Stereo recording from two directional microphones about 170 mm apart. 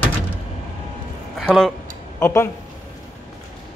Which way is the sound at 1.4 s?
Centre (ahead or behind).